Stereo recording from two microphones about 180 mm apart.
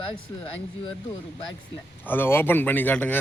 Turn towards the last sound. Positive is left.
turn(degrees=10)  # may be behind; listen again after turning